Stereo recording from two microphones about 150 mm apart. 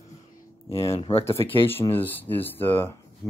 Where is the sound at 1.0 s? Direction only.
40° left (ahead or behind).